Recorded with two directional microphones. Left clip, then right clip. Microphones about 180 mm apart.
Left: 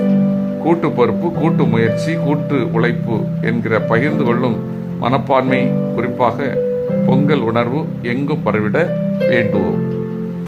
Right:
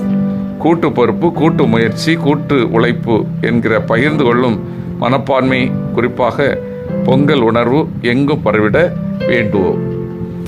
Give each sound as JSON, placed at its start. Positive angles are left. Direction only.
{"t": 0.6, "sound": "speech", "side_deg": -30}
{"t": 9.3, "sound": "speech", "side_deg": -15}